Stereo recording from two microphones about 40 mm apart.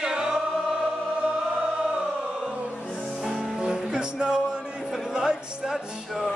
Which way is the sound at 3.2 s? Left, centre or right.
Centre.